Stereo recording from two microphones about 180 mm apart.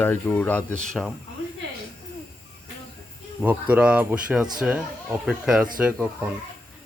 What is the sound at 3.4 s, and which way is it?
Speech, 10° right (ahead or behind).